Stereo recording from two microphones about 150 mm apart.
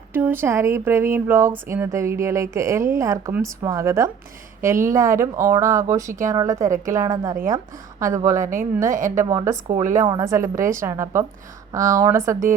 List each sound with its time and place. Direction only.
0.1 s speech: 15° right (ahead or behind)
8.9 s a woman's voice: 60° right (ahead or behind)
9.1 s speech: 20° right (ahead or behind)